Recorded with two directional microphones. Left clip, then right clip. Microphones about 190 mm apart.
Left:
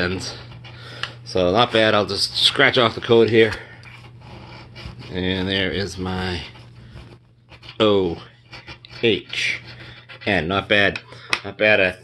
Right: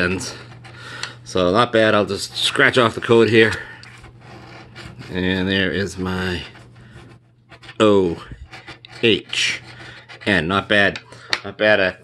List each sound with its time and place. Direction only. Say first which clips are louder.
0.0 s speech: right 3 dB; 40° right (ahead or behind)
5.1 s speech: right 2 dB; 40° right (ahead or behind)
7.7 s speech: right 2 dB; 40° right (ahead or behind)
11.4 s speech: right 1 dB; 15° right (ahead or behind)